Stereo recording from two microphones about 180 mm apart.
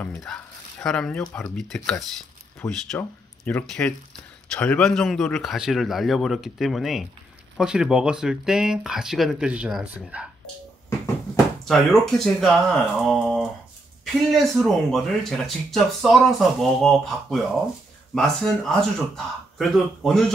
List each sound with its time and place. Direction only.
0.0 s speech: 5° left (ahead or behind)
11.6 s speech: centre (ahead or behind)